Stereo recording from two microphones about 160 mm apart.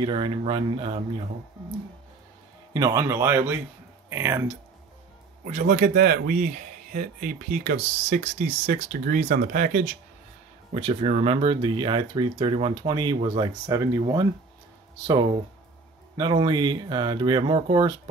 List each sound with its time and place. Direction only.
0.0 s speech: 30° right (ahead or behind)
2.7 s speech: 20° right (ahead or behind)
5.5 s speech: 55° right (ahead or behind)
10.7 s speech: 35° right (ahead or behind)
16.2 s speech: 30° right (ahead or behind)